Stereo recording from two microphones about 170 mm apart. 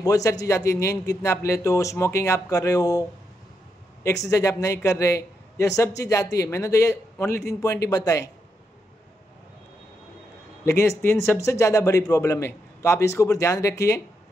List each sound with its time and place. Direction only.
0.0 s a man's voice: 20° left (ahead or behind)
4.3 s a man's voice: 20° left (ahead or behind)
10.6 s speech: 15° left (ahead or behind)